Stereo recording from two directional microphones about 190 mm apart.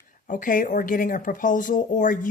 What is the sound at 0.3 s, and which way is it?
Speech, 45° left (ahead or behind).